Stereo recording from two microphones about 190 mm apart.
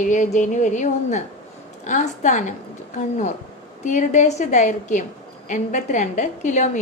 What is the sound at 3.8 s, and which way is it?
A woman's voice, 40° left (ahead or behind).